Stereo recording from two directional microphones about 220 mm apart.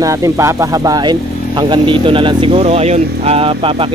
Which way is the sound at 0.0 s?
15° right (ahead or behind).